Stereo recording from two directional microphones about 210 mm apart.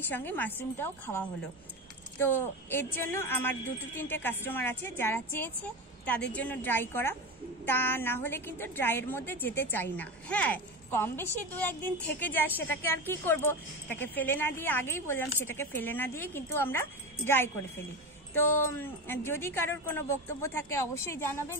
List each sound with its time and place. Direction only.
0.1 s a woman's voice: 10° left (ahead or behind)